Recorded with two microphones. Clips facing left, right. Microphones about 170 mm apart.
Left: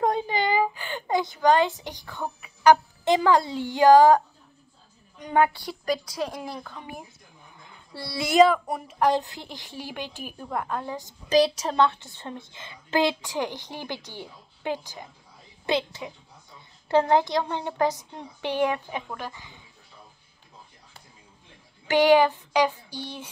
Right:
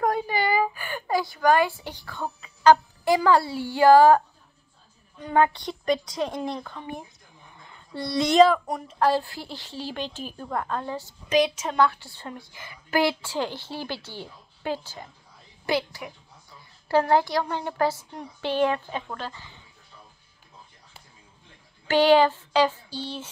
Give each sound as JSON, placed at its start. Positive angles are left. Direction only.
{"t": 0.0, "sound": "a woman's voice", "side_deg": 20}
{"t": 5.2, "sound": "a woman's voice", "side_deg": 15}
{"t": 5.5, "sound": "a woman's voice", "side_deg": 5}
{"t": 9.0, "sound": "a woman's voice", "side_deg": 20}
{"t": 11.2, "sound": "a woman's voice", "side_deg": 35}
{"t": 11.8, "sound": "a woman's voice", "side_deg": 20}
{"t": 21.8, "sound": "a woman's voice", "side_deg": 15}